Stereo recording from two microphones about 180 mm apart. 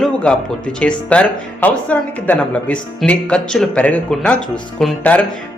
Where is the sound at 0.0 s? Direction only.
5° left (ahead or behind).